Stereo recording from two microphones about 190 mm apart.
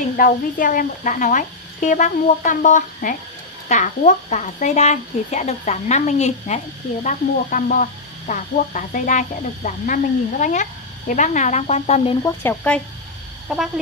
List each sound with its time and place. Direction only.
0.2 s speech: 45° left (ahead or behind)
12.2 s speech: 10° left (ahead or behind)
13.5 s speech: centre (ahead or behind)